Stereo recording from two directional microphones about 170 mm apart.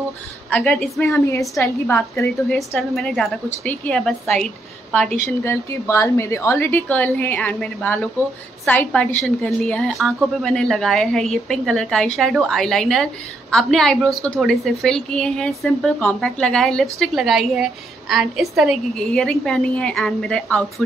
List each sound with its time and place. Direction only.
0.5 s a woman's voice: 10° left (ahead or behind)
1.6 s a woman's voice: 15° left (ahead or behind)
5.4 s a woman's voice: 15° left (ahead or behind)